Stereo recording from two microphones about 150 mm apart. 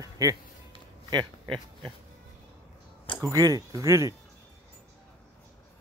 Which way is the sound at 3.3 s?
20° right (ahead or behind).